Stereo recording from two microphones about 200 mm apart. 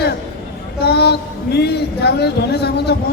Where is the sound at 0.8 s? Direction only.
55° left (ahead or behind).